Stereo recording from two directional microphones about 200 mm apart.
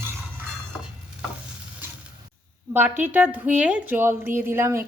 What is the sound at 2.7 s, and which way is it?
A woman's voice, 10° right (ahead or behind).